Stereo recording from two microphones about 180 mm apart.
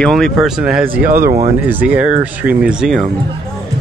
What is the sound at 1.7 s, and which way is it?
Speech, 10° right (ahead or behind).